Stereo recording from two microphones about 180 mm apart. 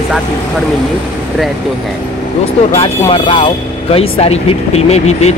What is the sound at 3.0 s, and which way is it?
Speech, 30° left (ahead or behind).